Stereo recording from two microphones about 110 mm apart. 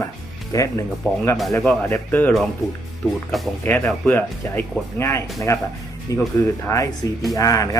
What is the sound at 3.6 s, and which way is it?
Speech, 15° left (ahead or behind).